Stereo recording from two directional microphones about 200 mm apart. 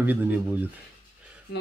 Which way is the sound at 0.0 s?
10° right (ahead or behind).